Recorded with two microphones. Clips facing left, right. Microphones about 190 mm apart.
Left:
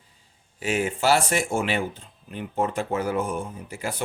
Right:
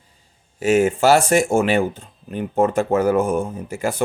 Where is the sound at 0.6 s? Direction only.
45° right (ahead or behind).